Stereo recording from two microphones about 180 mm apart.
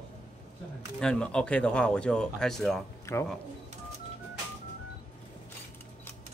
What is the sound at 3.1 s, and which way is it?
Speech, 15° left (ahead or behind).